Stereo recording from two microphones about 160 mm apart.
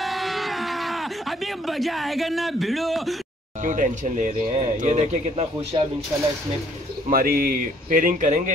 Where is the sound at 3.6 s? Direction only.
55° right (ahead or behind); by 5.9 s 30° right (ahead or behind).